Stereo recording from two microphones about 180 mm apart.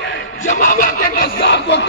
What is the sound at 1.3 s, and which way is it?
Speech, 75° left (ahead or behind).